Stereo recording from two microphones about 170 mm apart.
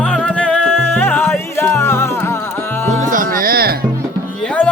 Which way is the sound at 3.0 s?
50° right (ahead or behind).